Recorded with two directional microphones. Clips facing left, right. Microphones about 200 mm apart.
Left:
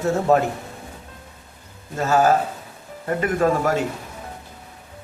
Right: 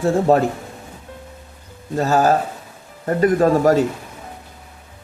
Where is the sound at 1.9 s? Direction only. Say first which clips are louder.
Right 2 dB; 35° right (ahead or behind).